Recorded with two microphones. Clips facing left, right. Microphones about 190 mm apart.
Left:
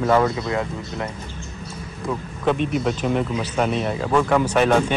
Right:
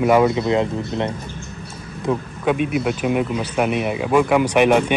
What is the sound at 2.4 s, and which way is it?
Speech, 10° right (ahead or behind).